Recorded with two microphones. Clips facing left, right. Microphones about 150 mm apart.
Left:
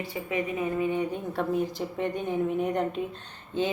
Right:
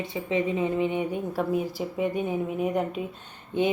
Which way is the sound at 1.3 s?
5° right (ahead or behind).